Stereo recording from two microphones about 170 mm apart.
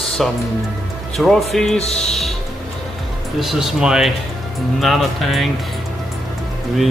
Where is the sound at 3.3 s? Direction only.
Centre (ahead or behind).